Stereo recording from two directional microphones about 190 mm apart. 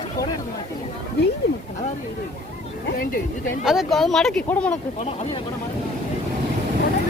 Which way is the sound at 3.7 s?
Centre (ahead or behind).